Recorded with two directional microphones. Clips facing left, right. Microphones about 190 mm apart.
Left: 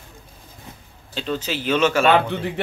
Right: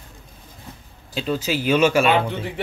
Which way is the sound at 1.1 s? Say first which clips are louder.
Right 3 dB; 10° right (ahead or behind).